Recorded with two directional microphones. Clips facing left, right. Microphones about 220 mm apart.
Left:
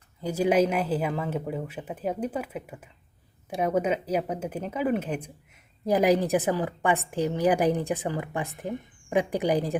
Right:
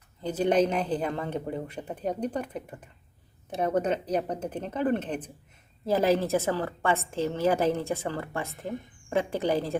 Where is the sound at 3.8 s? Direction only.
10° left (ahead or behind).